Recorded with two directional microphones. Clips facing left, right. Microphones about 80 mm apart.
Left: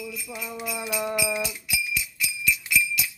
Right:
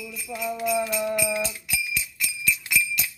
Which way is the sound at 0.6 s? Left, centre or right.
Centre.